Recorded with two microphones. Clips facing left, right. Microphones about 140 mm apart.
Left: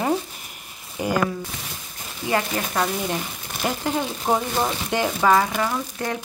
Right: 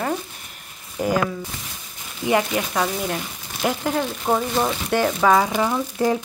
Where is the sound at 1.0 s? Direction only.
5° left (ahead or behind).